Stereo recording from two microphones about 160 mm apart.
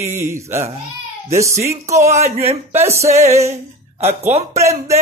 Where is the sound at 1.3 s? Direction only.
20° right (ahead or behind).